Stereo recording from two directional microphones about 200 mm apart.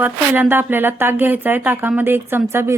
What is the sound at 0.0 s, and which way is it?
Speech, 10° right (ahead or behind).